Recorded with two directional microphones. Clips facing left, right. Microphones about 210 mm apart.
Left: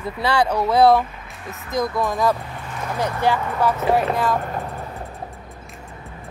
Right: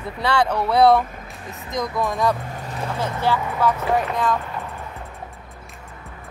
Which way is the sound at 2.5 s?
35° right (ahead or behind).